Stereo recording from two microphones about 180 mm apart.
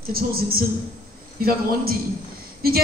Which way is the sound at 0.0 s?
55° right (ahead or behind).